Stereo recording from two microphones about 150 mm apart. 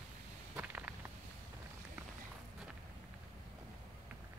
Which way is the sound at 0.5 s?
10° right (ahead or behind).